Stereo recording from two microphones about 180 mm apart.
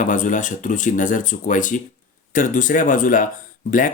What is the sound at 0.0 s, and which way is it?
Speech, 45° left (ahead or behind).